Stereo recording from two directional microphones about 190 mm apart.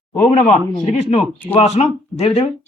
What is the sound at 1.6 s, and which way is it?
Speech, 35° left (ahead or behind).